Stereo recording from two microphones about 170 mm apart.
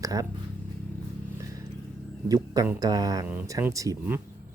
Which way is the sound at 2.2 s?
20° right (ahead or behind).